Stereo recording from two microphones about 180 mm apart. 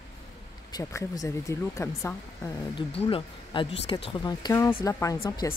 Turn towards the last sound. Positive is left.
turn(degrees=20)  # may be behind; listen again after turning